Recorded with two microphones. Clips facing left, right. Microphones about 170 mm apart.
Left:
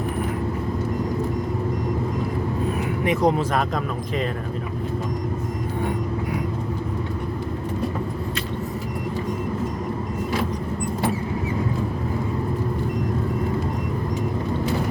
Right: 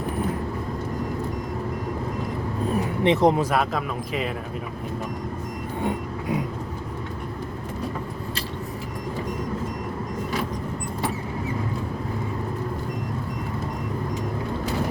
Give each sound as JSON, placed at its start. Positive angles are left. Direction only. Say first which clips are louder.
{"t": 3.0, "sound": "speech", "louder": "right 2 dB", "side_deg": -25}